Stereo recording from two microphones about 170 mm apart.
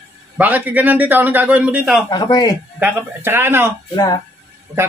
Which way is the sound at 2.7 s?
10° right (ahead or behind).